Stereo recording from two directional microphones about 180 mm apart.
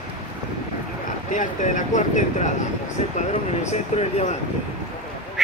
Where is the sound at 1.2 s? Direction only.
45° left (ahead or behind).